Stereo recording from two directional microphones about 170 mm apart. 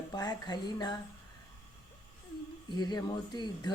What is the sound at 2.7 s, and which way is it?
Speech, 25° left (ahead or behind).